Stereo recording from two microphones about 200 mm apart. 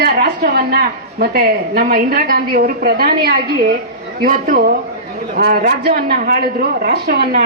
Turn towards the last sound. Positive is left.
turn(degrees=-45)  # may be behind; listen again after turning